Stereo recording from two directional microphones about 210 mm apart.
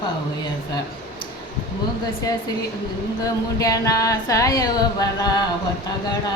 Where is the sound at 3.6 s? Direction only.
15° left (ahead or behind).